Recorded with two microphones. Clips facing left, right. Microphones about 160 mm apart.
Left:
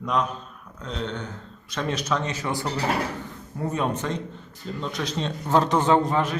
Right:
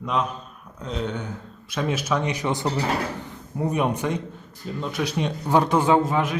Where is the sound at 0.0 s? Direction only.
5° right (ahead or behind).